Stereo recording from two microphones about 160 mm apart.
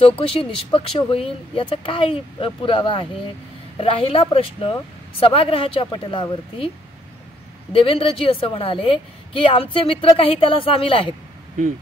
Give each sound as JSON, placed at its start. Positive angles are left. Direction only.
{"t": 0.0, "sound": "a woman's voice", "side_deg": 35}
{"t": 7.7, "sound": "a woman's voice", "side_deg": 35}